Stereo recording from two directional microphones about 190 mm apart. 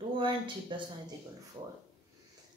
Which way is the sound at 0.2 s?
25° right (ahead or behind).